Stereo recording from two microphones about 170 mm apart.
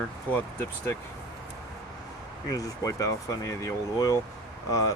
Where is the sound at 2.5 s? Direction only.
20° left (ahead or behind).